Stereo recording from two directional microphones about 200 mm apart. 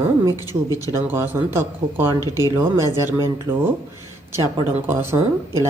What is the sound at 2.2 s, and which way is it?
Speech, 20° left (ahead or behind).